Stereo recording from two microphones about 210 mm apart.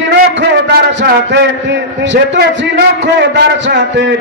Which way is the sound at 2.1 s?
55° right (ahead or behind).